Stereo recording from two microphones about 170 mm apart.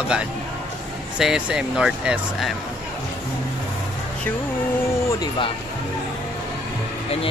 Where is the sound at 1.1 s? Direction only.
5° right (ahead or behind).